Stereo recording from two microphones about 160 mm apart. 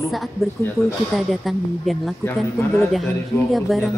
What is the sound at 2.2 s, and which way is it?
Speech, 20° left (ahead or behind).